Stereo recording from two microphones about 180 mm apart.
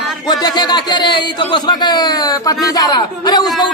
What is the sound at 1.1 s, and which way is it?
Speech, 25° left (ahead or behind).